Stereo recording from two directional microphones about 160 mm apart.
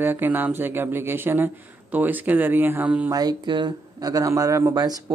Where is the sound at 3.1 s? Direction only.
25° right (ahead or behind).